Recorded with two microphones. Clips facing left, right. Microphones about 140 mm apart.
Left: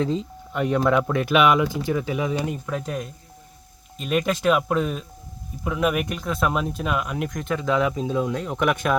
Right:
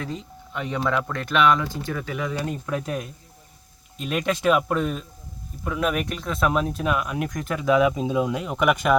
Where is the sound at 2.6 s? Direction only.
5° right (ahead or behind).